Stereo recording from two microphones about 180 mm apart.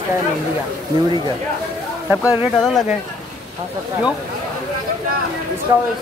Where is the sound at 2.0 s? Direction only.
5° right (ahead or behind).